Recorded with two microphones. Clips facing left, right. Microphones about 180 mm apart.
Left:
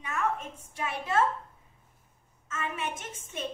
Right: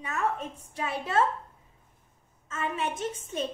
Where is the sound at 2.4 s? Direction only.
35° right (ahead or behind).